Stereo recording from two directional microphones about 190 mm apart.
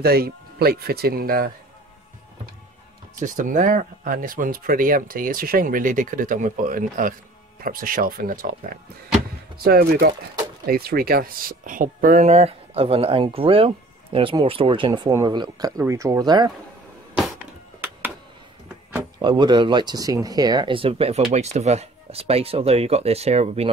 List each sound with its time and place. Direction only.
0.0 s speech: 55° right (ahead or behind)
3.2 s speech: 45° right (ahead or behind)
9.6 s speech: 55° right (ahead or behind); by 16.5 s 20° right (ahead or behind)
19.1 s speech: 25° right (ahead or behind)